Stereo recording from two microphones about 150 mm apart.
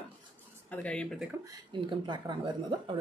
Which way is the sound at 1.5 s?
30° right (ahead or behind).